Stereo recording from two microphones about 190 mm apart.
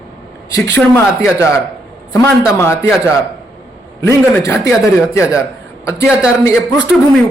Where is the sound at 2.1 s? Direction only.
15° left (ahead or behind).